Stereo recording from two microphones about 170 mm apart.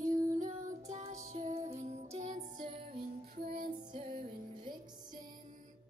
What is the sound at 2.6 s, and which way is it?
Music, 30° right (ahead or behind).